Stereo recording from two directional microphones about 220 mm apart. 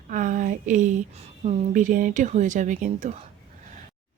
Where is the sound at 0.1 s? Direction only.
35° right (ahead or behind).